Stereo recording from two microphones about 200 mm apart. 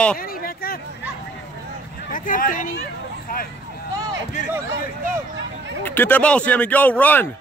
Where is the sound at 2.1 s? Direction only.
45° left (ahead or behind).